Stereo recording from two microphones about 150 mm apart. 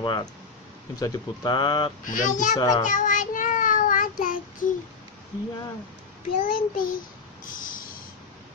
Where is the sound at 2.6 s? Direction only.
30° left (ahead or behind).